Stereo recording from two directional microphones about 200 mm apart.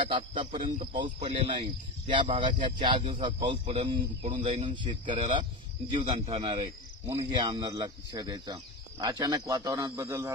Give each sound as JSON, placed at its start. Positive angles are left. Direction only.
{"t": 0.1, "sound": "a man's voice", "side_deg": -25}